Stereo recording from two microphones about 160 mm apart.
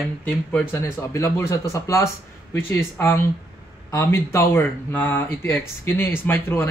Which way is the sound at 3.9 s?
20° left (ahead or behind).